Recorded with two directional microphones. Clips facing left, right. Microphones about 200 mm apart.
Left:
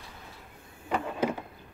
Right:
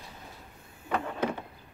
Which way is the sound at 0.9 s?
10° left (ahead or behind).